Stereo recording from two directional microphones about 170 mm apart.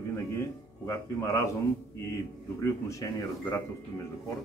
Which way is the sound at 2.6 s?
20° left (ahead or behind).